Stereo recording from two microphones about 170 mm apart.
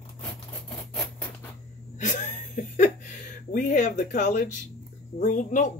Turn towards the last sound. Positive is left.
turn(degrees=50)  # may be behind; listen again after turning